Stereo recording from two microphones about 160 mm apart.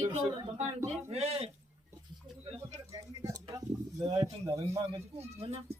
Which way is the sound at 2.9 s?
20° right (ahead or behind).